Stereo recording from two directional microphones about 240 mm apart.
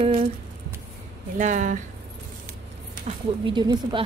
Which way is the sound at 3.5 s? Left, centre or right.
Centre.